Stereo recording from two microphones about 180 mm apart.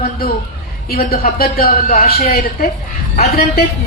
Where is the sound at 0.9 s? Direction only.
55° left (ahead or behind).